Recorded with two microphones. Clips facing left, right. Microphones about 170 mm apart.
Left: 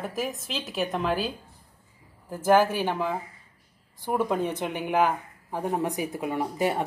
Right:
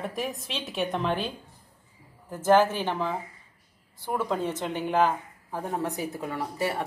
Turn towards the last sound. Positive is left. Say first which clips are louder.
# left 3 dB
turn(degrees=20)  # may be behind; listen again after turning